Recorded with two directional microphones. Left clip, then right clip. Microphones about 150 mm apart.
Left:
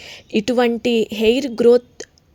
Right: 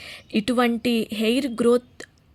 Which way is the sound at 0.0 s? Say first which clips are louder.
Left 5 dB; 20° left (ahead or behind).